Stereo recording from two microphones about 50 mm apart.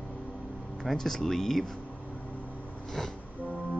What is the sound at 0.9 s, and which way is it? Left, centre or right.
Speech, centre.